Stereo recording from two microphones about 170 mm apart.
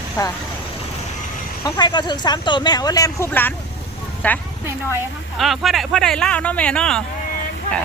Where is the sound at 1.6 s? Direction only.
25° left (ahead or behind); by 7.0 s 5° left (ahead or behind).